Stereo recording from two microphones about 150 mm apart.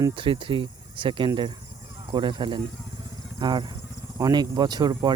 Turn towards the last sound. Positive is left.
turn(degrees=-30)  # may be behind; listen again after turning